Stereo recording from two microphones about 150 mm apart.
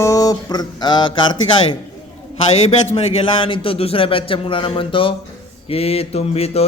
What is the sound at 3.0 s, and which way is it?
A man's voice, 35° left (ahead or behind).